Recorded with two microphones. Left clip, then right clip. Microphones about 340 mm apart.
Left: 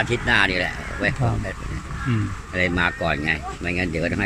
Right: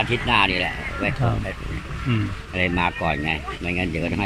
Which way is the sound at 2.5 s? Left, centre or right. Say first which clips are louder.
Left 1 dB; left.